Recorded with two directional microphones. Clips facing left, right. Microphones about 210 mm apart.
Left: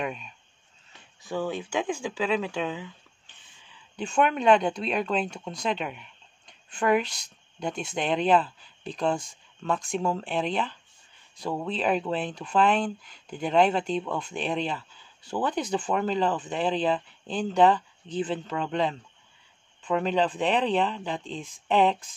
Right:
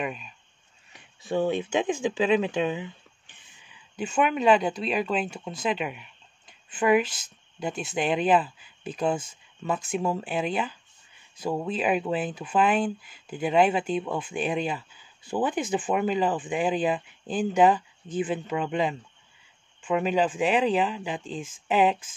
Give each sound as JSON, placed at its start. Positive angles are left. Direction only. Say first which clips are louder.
{"t": 0.0, "sound": "speech", "louder": "even", "side_deg": 0}
{"t": 0.9, "sound": "speech", "louder": "right 5 dB", "side_deg": -20}
{"t": 3.9, "sound": "speech", "louder": "even", "side_deg": -5}